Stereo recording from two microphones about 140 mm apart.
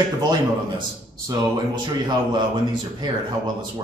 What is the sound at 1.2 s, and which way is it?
Speech, 30° right (ahead or behind).